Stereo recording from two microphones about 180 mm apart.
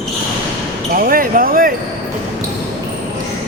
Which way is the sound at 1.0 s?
50° right (ahead or behind).